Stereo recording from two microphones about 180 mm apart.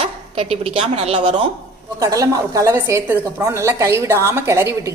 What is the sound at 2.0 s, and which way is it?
A woman's voice, 20° right (ahead or behind).